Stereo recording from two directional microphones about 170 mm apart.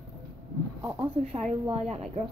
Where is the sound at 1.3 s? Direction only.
40° right (ahead or behind).